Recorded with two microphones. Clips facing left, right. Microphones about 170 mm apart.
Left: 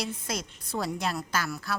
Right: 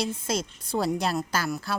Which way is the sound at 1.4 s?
20° right (ahead or behind).